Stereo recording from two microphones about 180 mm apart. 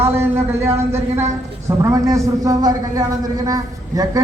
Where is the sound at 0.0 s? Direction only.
15° right (ahead or behind).